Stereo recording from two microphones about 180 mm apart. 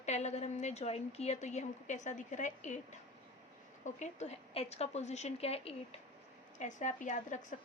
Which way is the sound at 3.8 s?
40° left (ahead or behind).